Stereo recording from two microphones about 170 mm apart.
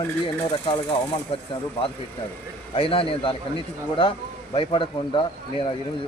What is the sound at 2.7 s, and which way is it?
A man's voice, 35° left (ahead or behind).